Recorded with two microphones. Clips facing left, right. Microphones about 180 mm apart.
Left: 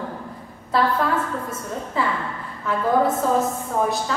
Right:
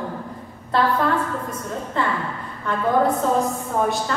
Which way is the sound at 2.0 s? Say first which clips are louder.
Even; 5° left (ahead or behind).